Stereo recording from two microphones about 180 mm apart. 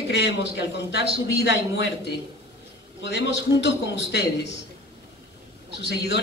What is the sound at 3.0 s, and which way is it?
A man's voice, 75° left (ahead or behind).